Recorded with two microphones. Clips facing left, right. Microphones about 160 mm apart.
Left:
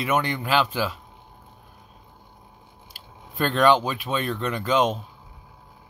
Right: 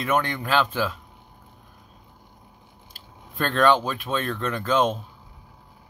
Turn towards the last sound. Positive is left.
turn(degrees=10)  # may be behind; listen again after turning